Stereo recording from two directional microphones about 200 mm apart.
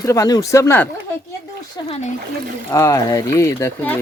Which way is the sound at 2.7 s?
15° left (ahead or behind).